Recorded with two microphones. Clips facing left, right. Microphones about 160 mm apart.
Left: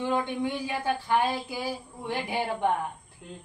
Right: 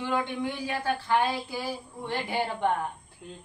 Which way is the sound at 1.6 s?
10° left (ahead or behind).